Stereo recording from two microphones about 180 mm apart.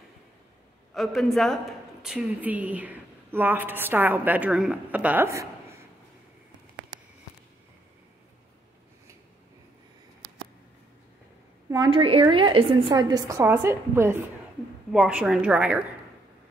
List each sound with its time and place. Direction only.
0.9 s a woman's voice: centre (ahead or behind); by 5.9 s 15° right (ahead or behind)
11.7 s a woman's voice: 25° right (ahead or behind); by 15.8 s 5° right (ahead or behind)